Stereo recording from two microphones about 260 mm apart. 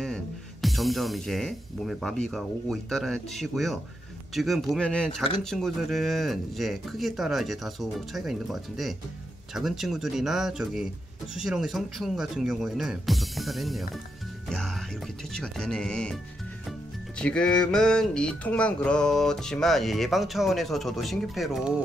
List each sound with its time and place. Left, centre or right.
0.0 s speech: centre
4.4 s music: centre
17.2 s music: centre